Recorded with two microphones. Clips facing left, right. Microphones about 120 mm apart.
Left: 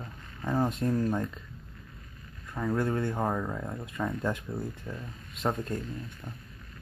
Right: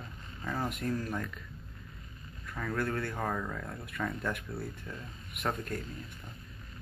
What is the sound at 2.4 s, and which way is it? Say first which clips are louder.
Speech: left 5 dB; 20° left (ahead or behind).